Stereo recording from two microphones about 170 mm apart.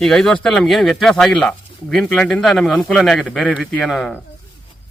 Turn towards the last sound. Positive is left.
turn(degrees=0)  # may be behind; listen again after turning